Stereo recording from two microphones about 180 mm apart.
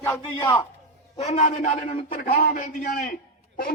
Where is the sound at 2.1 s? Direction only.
55° left (ahead or behind).